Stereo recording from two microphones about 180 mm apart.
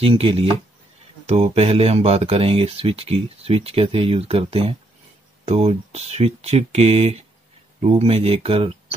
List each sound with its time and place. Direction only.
0.0 s speech: 30° right (ahead or behind)